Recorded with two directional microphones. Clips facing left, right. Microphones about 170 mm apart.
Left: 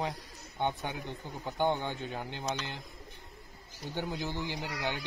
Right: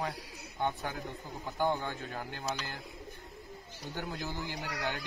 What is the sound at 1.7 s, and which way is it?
Speech, 25° left (ahead or behind).